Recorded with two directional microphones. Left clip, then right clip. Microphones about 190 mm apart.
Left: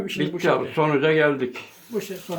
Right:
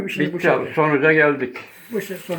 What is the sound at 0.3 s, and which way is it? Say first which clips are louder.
A man's voice: right 3 dB; 10° left (ahead or behind).